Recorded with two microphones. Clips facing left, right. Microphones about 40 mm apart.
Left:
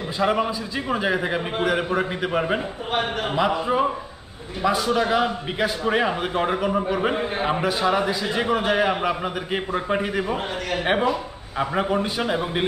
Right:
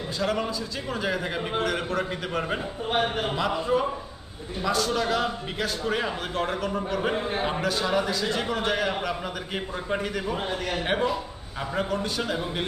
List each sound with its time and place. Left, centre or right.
0.2 s a man's voice: left